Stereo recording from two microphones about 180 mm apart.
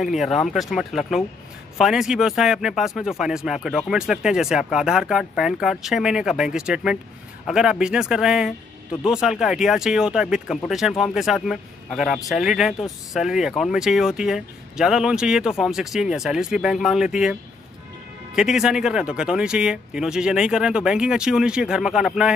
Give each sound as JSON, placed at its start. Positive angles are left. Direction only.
{"t": 0.0, "sound": "speech", "side_deg": 0}